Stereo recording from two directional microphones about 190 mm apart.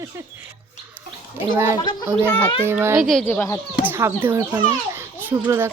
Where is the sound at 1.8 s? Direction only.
20° left (ahead or behind).